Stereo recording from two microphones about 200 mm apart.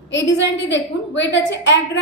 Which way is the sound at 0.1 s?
65° left (ahead or behind).